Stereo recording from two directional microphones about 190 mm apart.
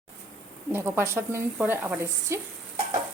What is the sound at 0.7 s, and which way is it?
Speech, 10° right (ahead or behind).